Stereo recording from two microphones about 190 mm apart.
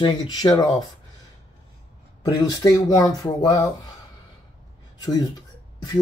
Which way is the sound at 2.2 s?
20° left (ahead or behind).